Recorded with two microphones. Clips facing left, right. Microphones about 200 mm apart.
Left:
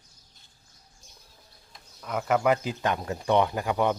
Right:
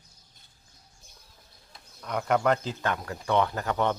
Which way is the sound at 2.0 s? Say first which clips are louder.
Left 1 dB; 5° left (ahead or behind).